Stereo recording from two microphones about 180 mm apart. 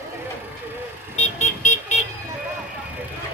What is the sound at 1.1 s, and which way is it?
Vehicle, 40° left (ahead or behind).